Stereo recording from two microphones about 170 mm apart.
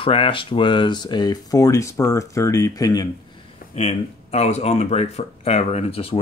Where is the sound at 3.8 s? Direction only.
40° left (ahead or behind).